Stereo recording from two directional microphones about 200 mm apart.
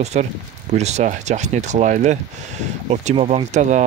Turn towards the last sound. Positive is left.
turn(degrees=-35)  # may be behind; listen again after turning